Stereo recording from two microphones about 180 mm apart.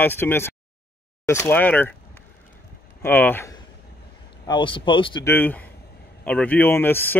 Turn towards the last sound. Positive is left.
turn(degrees=10)  # may be behind; listen again after turning